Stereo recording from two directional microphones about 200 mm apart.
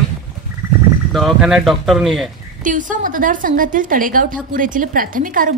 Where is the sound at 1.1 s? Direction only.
Centre (ahead or behind).